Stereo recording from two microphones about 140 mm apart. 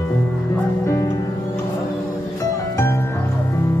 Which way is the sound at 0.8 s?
20° left (ahead or behind).